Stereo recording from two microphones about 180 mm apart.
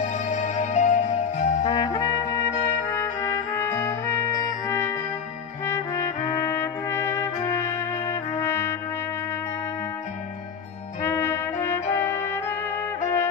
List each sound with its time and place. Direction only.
0.0 s music: 40° left (ahead or behind)
1.6 s music: 20° left (ahead or behind)
3.0 s trumpet: 15° left (ahead or behind)
11.0 s trumpet: 15° left (ahead or behind)
13.0 s music: 15° left (ahead or behind)